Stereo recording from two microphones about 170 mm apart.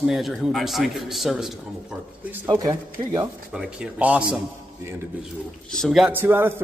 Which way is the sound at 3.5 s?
5° right (ahead or behind).